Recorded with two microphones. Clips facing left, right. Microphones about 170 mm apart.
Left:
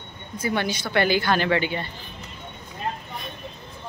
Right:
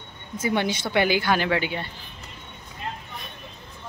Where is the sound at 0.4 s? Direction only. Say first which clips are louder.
Right 1 dB; 20° right (ahead or behind).